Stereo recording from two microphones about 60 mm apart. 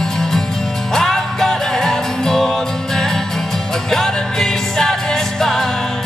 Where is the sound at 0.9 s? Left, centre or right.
Centre.